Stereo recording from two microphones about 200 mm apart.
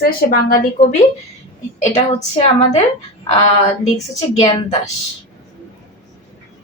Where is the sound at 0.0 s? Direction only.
45° left (ahead or behind).